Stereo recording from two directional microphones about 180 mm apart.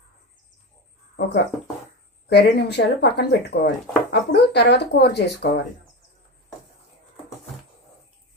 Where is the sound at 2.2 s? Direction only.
65° left (ahead or behind).